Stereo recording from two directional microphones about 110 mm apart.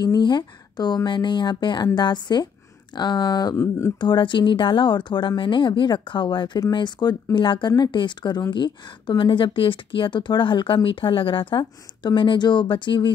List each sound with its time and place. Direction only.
0.0 s a woman's voice: 40° left (ahead or behind)
3.5 s speech: 25° left (ahead or behind)
4.0 s a woman's voice: 45° left (ahead or behind)